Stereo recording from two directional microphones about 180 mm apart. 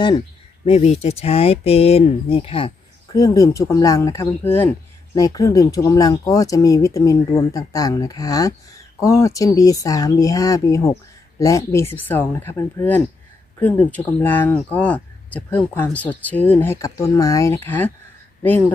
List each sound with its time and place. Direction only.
0.7 s speech: 35° left (ahead or behind); by 17.9 s 10° left (ahead or behind)